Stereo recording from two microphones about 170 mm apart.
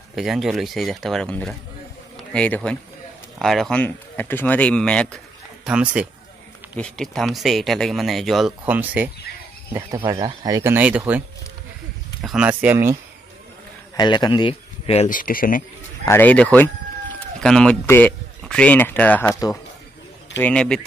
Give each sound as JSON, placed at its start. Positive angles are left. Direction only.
{"t": 0.1, "sound": "speech", "side_deg": 0}
{"t": 5.7, "sound": "speech", "side_deg": -5}
{"t": 9.9, "sound": "speech", "side_deg": -30}
{"t": 13.9, "sound": "speech", "side_deg": 25}
{"t": 15.0, "sound": "speech", "side_deg": 55}
{"t": 16.1, "sound": "speech", "side_deg": 10}
{"t": 20.3, "sound": "speech", "side_deg": 5}